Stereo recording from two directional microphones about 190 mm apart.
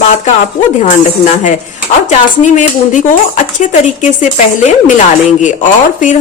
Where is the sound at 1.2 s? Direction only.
40° left (ahead or behind).